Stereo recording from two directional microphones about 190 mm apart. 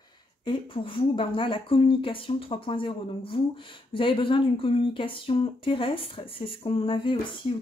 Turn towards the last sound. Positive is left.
turn(degrees=25)  # may be behind; listen again after turning